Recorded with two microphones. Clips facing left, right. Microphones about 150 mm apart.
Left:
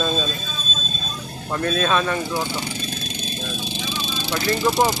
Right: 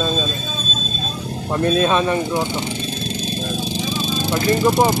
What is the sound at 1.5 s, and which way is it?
Speech, 25° right (ahead or behind).